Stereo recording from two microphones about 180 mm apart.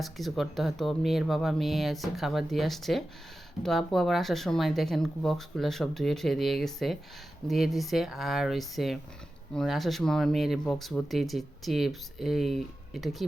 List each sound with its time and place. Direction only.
0.0 s speech: centre (ahead or behind)